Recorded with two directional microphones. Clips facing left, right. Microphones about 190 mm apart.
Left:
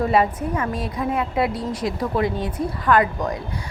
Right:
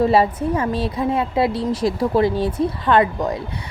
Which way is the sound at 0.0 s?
30° right (ahead or behind).